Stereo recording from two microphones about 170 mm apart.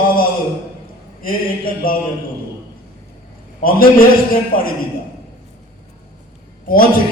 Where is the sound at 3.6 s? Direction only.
55° left (ahead or behind).